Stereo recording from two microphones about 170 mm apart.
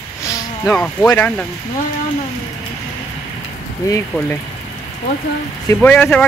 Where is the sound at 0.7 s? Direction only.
5° left (ahead or behind).